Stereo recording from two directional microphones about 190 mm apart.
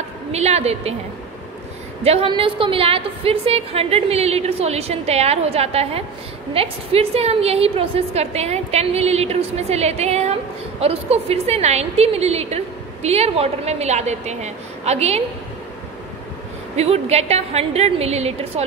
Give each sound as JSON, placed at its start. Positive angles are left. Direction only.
{"t": 0.3, "sound": "a woman's voice", "side_deg": -35}
{"t": 2.0, "sound": "a woman's voice", "side_deg": -30}
{"t": 16.7, "sound": "a woman's voice", "side_deg": -35}